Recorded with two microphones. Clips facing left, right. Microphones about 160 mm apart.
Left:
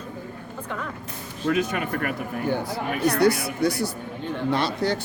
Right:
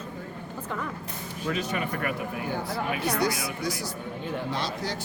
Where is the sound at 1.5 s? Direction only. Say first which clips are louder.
Left 6 dB; 50° left (ahead or behind).